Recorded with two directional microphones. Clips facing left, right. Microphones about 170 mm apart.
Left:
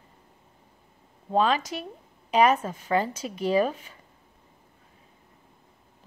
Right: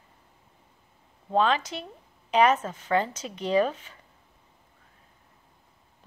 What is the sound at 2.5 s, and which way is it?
Speech, 10° left (ahead or behind).